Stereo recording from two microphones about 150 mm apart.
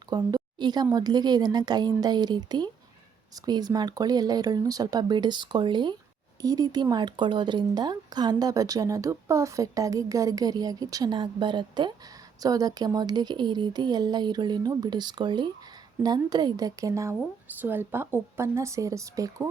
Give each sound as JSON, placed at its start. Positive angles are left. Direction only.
{"t": 0.1, "sound": "speech", "side_deg": -25}